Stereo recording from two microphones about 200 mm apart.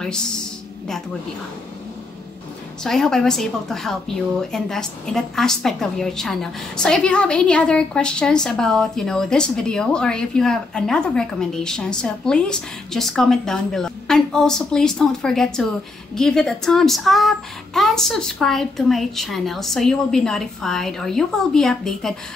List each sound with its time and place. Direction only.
2.8 s a woman's voice: 5° left (ahead or behind)